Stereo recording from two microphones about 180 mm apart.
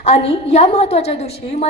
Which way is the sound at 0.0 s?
35° left (ahead or behind).